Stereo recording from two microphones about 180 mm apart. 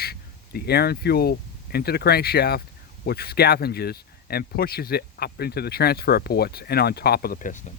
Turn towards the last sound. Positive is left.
turn(degrees=45)  # may be behind; listen again after turning